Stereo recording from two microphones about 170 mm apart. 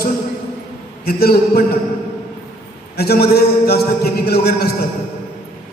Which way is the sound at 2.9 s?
65° left (ahead or behind).